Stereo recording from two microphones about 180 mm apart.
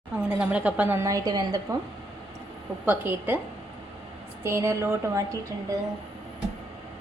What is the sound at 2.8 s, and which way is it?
Speech, 10° right (ahead or behind).